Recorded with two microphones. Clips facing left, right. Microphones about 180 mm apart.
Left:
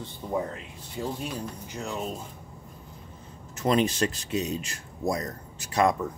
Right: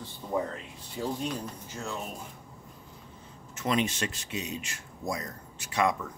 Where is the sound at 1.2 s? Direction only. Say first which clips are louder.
Even; 15° left (ahead or behind).